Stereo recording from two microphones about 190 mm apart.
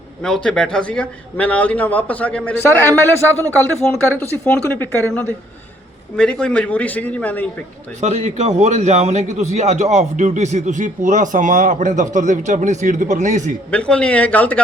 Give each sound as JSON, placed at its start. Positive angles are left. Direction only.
{"t": 0.2, "sound": "a man's voice", "side_deg": 5}
{"t": 3.2, "sound": "speech", "side_deg": -15}
{"t": 4.1, "sound": "a man's voice", "side_deg": 10}
{"t": 8.0, "sound": "a man's voice", "side_deg": -35}
{"t": 13.7, "sound": "a man's voice", "side_deg": 5}